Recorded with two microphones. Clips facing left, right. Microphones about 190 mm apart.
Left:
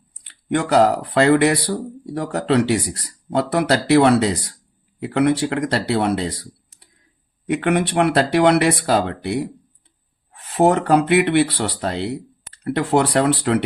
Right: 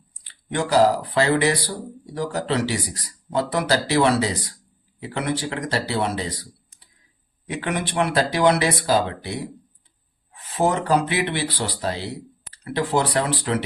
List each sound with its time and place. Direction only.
0.3 s speech: 60° left (ahead or behind)
7.5 s speech: 60° left (ahead or behind)